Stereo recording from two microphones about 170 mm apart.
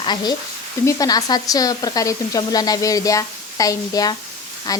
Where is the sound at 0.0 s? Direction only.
25° left (ahead or behind).